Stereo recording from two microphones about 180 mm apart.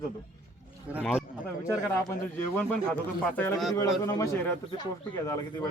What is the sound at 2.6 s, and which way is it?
Speech, 10° left (ahead or behind).